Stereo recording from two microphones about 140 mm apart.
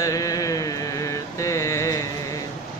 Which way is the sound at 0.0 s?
25° left (ahead or behind).